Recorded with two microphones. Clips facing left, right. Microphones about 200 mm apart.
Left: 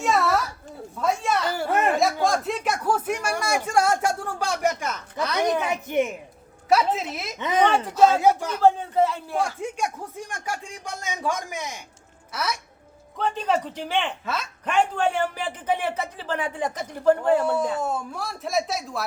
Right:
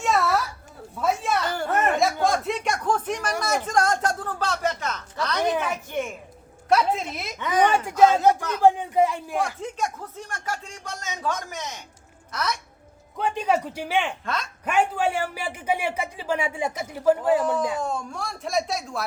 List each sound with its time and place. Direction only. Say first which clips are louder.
0.0 s a sound: left 1 dB; centre (ahead or behind)
0.9 s a woman's voice: even; 5° right (ahead or behind)
1.5 s chuckle: left 1 dB; 10° left (ahead or behind)
5.6 s speech: left 4 dB; 20° left (ahead or behind)
6.7 s speech: even; 5° left (ahead or behind)
7.3 s speech: even; 20° left (ahead or behind)
7.9 s speech: right 1 dB; 10° right (ahead or behind)
8.1 s speech: even; 10° left (ahead or behind)
8.6 s speech: even; 15° right (ahead or behind)
9.6 s speech: left 1 dB; 10° left (ahead or behind)
13.1 s speech: right 1 dB; 10° right (ahead or behind)
17.4 s speech: left 1 dB; 10° left (ahead or behind)